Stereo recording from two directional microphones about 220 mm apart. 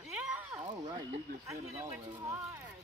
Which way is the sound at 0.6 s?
20° right (ahead or behind).